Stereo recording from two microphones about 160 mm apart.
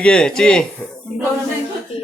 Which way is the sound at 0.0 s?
5° left (ahead or behind).